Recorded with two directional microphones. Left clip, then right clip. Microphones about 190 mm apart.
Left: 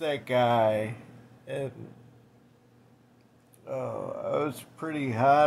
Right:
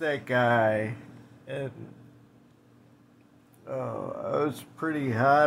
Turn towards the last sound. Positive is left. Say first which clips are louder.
# even
turn(degrees=0)  # may be behind; listen again after turning